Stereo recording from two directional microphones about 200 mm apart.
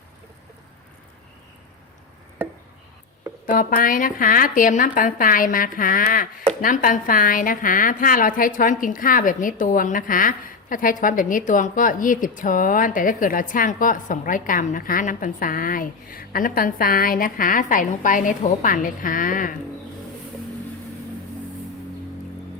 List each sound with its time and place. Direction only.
3.4 s a woman's voice: 45° left (ahead or behind)